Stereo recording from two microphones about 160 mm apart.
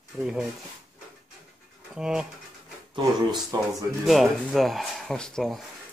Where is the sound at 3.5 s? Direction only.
25° right (ahead or behind).